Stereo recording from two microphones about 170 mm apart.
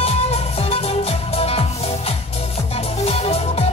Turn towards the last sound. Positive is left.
turn(degrees=35)  # may be behind; listen again after turning